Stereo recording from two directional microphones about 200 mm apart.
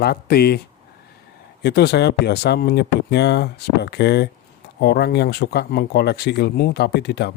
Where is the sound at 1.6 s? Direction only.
55° left (ahead or behind).